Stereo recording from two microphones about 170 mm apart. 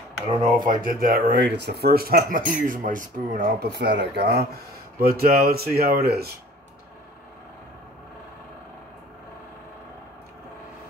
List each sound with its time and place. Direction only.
0.3 s speech: 40° right (ahead or behind)
0.7 s speech: 55° right (ahead or behind)